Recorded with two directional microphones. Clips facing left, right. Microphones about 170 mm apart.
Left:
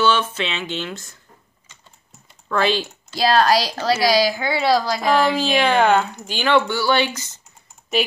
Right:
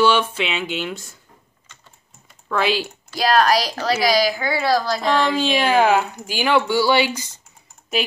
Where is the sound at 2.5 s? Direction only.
5° right (ahead or behind).